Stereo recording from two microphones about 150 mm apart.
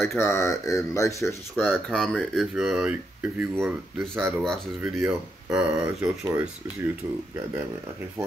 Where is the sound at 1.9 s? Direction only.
Centre (ahead or behind); by 4.3 s 15° right (ahead or behind).